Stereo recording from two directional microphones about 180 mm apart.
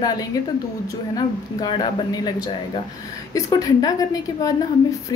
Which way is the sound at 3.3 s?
20° left (ahead or behind).